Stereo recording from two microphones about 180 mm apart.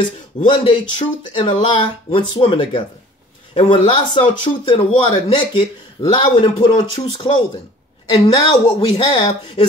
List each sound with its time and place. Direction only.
0.5 s speech: 25° left (ahead or behind)